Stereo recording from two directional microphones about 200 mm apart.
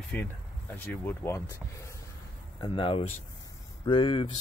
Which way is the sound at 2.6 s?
25° left (ahead or behind).